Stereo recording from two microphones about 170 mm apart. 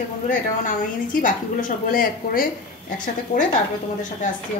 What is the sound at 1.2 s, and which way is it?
A woman's voice, 55° left (ahead or behind).